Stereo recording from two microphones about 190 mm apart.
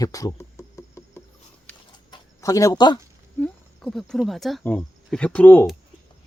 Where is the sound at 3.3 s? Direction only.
5° left (ahead or behind).